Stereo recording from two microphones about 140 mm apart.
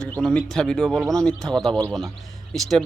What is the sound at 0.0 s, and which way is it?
A man's voice, 5° left (ahead or behind).